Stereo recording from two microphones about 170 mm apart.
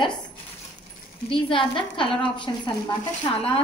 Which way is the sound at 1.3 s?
30° left (ahead or behind).